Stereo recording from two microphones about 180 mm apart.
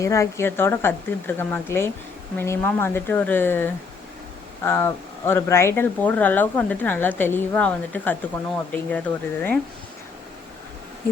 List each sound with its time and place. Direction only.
0.0 s speech: 15° left (ahead or behind)